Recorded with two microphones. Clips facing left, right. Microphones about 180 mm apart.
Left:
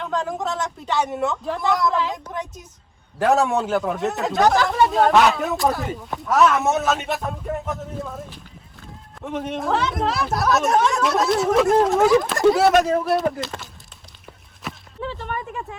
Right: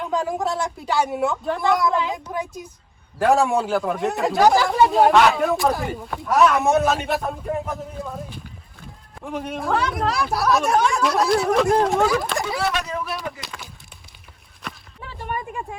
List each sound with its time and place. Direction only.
0.0 s speech: 10° right (ahead or behind)
12.5 s speech: 50° left (ahead or behind)
14.6 s a sound: 5° left (ahead or behind)
15.2 s speech: 10° right (ahead or behind)